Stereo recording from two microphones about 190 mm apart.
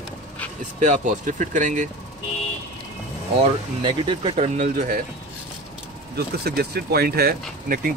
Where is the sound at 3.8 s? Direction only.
25° right (ahead or behind).